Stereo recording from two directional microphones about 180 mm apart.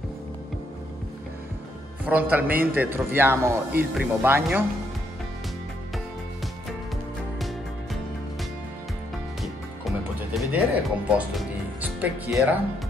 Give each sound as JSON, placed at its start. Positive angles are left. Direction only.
{"t": 2.0, "sound": "speech", "side_deg": -10}
{"t": 7.3, "sound": "music", "side_deg": 0}
{"t": 9.4, "sound": "music", "side_deg": 0}